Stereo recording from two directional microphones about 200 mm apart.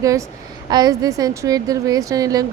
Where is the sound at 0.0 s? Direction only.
15° right (ahead or behind).